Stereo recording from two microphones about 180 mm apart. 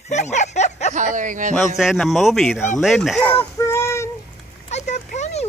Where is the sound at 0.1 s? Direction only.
40° left (ahead or behind).